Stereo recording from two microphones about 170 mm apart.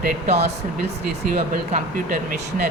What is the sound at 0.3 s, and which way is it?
Speech, 40° right (ahead or behind).